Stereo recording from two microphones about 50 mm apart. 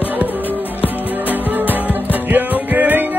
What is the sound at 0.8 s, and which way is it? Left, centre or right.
Music, right.